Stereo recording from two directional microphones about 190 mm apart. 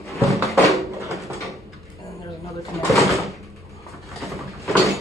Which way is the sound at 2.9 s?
Centre (ahead or behind).